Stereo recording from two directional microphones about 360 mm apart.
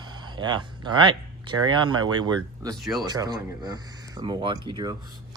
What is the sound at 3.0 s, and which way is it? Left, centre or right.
Speech, centre.